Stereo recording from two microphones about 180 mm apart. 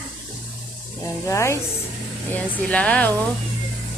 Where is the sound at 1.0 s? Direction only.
15° left (ahead or behind).